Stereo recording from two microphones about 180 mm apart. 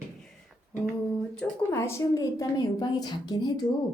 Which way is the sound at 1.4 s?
15° left (ahead or behind).